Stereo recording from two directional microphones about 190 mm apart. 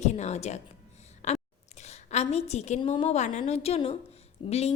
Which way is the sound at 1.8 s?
35° left (ahead or behind).